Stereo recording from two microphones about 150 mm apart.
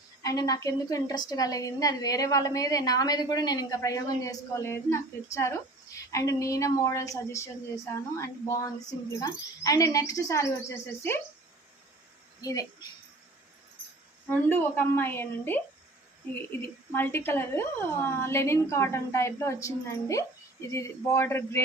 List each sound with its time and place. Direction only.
0.2 s a woman's voice: 25° left (ahead or behind)
12.4 s speech: 25° left (ahead or behind)
14.3 s a woman's voice: 15° left (ahead or behind)
16.9 s a woman's voice: 15° left (ahead or behind)